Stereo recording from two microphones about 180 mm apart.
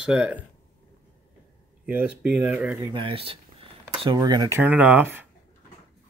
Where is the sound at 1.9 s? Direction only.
10° right (ahead or behind).